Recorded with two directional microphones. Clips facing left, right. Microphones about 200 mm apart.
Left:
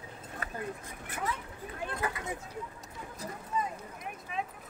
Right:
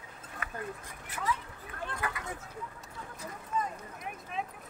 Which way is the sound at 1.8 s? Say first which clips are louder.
Left 2 dB; 20° left (ahead or behind).